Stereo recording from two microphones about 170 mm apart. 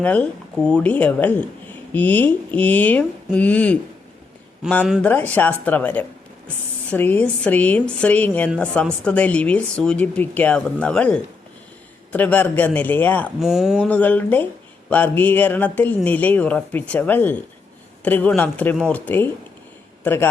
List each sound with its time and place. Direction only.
0.0 s a woman's voice: 10° left (ahead or behind)
5.0 s a woman's voice: 10° left (ahead or behind)
13.4 s a woman's voice: centre (ahead or behind)